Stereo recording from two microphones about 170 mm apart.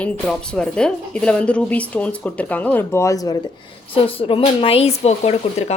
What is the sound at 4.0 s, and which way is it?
Speech, 35° left (ahead or behind).